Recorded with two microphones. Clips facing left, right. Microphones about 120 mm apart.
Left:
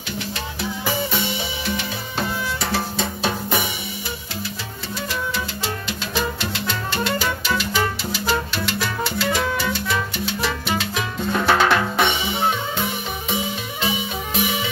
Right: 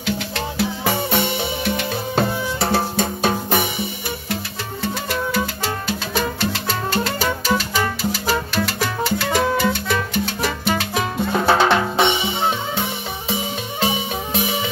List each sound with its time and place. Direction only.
0.8 s music: 60° right (ahead or behind)
6.7 s music: 35° right (ahead or behind); by 9.8 s 55° right (ahead or behind)
10.4 s salsa music: 45° right (ahead or behind)
11.3 s drum: 25° right (ahead or behind)
13.3 s music: 35° right (ahead or behind)